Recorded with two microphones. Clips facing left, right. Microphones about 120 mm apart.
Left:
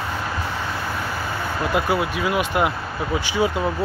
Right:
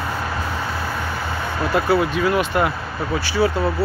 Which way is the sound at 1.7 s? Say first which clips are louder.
Right 4 dB; 10° left (ahead or behind).